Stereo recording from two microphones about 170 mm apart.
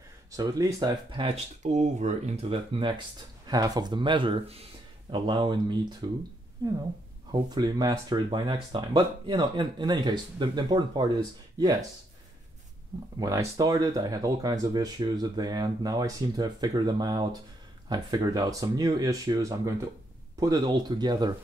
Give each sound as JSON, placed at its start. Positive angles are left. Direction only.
{"t": 0.4, "sound": "speech", "side_deg": -20}
{"t": 1.6, "sound": "speech", "side_deg": -45}
{"t": 7.2, "sound": "speech", "side_deg": -25}
{"t": 13.2, "sound": "speech", "side_deg": -20}